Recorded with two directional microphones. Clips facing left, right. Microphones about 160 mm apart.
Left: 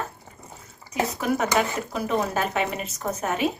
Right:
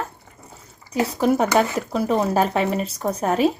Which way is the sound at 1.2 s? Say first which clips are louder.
Right 6 dB; 35° right (ahead or behind).